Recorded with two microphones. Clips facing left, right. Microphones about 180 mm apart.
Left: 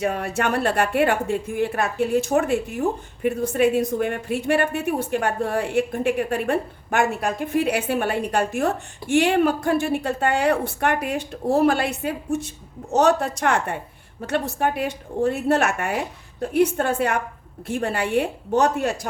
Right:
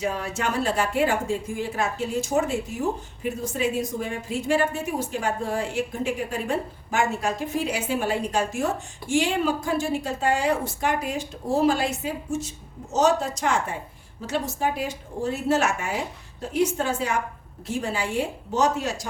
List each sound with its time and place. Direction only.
0.0 s speech: 60° left (ahead or behind)